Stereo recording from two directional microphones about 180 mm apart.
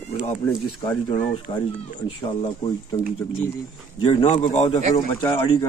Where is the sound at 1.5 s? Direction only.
25° left (ahead or behind).